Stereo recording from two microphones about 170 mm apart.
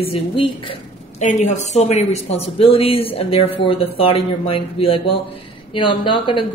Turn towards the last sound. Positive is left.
turn(degrees=30)  # may be behind; listen again after turning